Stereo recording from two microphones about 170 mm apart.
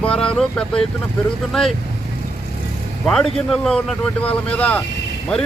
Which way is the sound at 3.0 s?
5° left (ahead or behind).